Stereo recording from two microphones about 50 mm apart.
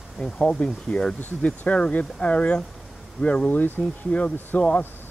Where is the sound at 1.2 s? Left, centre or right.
Left.